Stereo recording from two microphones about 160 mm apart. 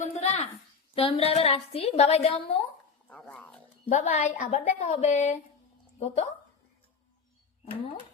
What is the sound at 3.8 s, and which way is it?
A woman's voice, 45° left (ahead or behind).